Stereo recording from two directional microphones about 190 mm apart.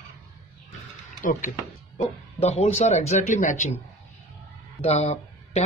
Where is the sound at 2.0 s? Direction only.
35° left (ahead or behind).